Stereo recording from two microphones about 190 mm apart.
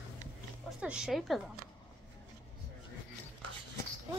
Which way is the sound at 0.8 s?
5° right (ahead or behind).